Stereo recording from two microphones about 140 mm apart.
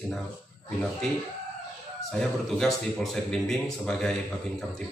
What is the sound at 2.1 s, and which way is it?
A man's voice, 5° left (ahead or behind).